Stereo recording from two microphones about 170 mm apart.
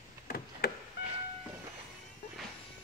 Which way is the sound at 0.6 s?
70° left (ahead or behind).